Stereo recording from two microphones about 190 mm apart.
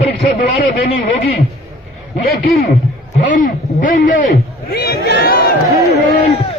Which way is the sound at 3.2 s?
45° left (ahead or behind).